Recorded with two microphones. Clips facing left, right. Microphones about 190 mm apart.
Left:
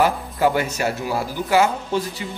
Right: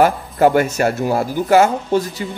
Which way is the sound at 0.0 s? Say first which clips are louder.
Right 5 dB; 50° right (ahead or behind).